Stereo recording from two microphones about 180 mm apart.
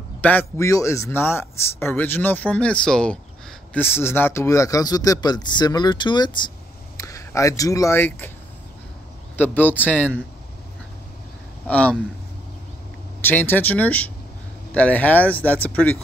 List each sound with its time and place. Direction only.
0.2 s a man's voice: 10° left (ahead or behind)
9.4 s a man's voice: 10° left (ahead or behind)
11.6 s a man's voice: 5° left (ahead or behind)
13.2 s a man's voice: 10° left (ahead or behind)